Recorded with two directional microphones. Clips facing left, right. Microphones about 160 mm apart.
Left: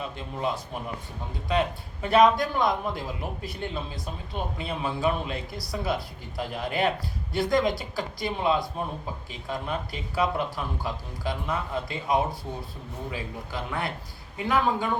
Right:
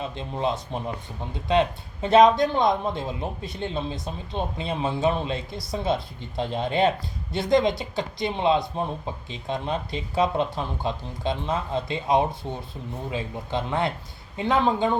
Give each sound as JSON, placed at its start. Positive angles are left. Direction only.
{"t": 0.2, "sound": "a man's voice", "side_deg": -25}